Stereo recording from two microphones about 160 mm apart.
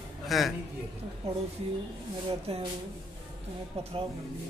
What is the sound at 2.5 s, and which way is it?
Speech, 40° right (ahead or behind).